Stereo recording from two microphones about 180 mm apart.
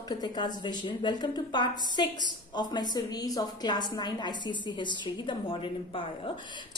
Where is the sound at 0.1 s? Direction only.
25° left (ahead or behind).